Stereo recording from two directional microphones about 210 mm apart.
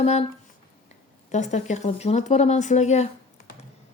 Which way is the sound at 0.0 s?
30° left (ahead or behind).